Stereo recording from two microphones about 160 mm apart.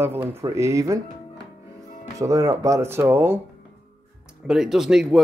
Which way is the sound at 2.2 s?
20° right (ahead or behind).